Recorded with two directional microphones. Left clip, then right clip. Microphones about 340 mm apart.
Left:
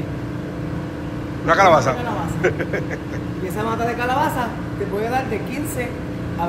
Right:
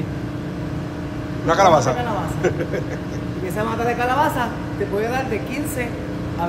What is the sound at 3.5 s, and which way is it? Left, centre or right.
Speech, centre.